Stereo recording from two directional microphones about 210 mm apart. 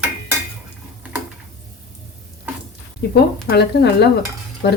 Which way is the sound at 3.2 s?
50° left (ahead or behind).